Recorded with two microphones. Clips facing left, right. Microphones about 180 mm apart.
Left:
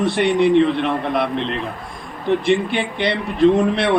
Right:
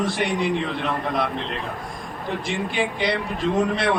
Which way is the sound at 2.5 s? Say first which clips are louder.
Left 7 dB; 65° left (ahead or behind).